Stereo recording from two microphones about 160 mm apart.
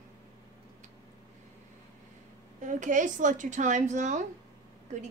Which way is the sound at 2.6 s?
50° right (ahead or behind).